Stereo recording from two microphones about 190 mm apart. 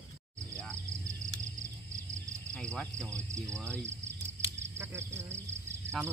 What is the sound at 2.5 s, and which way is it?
Speech, 5° left (ahead or behind).